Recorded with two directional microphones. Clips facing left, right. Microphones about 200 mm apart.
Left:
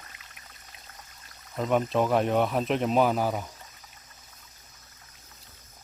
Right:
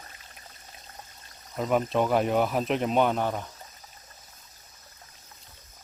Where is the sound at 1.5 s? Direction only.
Centre (ahead or behind).